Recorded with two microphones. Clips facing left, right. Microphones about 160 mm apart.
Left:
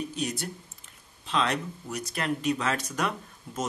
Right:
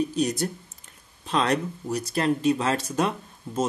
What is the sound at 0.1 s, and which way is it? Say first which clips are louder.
Speech: right 7 dB; 40° right (ahead or behind).